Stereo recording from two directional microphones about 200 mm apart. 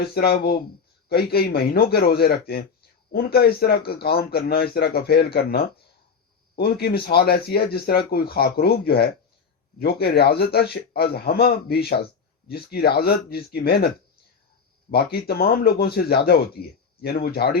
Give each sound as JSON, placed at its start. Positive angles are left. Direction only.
{"t": 0.0, "sound": "speech", "side_deg": 50}